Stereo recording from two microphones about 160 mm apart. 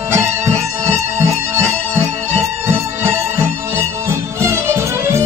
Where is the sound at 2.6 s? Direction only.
15° right (ahead or behind).